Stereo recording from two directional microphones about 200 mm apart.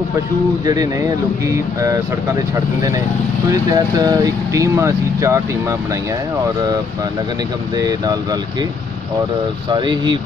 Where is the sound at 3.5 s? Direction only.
20° right (ahead or behind).